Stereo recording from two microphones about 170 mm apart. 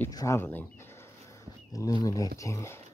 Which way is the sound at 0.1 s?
20° left (ahead or behind).